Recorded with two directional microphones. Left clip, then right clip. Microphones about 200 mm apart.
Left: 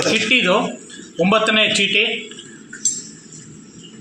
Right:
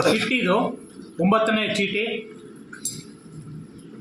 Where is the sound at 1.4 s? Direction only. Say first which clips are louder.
Left 6 dB; centre (ahead or behind).